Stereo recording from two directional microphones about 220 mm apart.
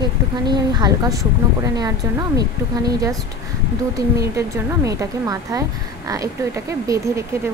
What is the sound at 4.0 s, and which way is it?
Speech, 15° right (ahead or behind).